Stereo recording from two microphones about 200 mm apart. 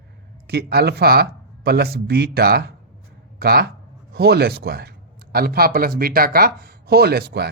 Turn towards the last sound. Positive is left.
turn(degrees=-55)  # may be behind; listen again after turning